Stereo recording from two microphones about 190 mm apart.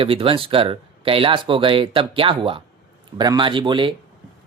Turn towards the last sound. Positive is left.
turn(degrees=-25)  # may be behind; listen again after turning